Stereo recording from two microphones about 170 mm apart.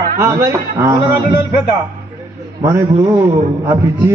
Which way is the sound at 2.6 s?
15° right (ahead or behind).